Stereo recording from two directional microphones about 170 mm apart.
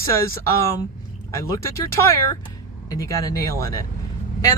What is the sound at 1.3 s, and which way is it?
Speech, 15° left (ahead or behind).